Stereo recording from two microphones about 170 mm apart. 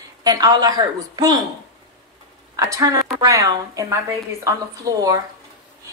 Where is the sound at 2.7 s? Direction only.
20° right (ahead or behind).